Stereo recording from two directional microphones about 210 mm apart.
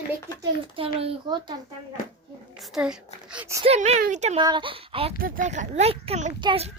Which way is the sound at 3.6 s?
30° right (ahead or behind).